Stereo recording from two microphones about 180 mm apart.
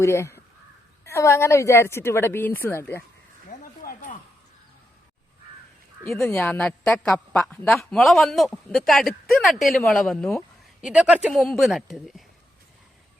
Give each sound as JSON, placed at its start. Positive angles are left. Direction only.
{"t": 0.0, "sound": "a woman's voice", "side_deg": 15}
{"t": 3.5, "sound": "a sound", "side_deg": 50}
{"t": 6.1, "sound": "a woman's voice", "side_deg": 5}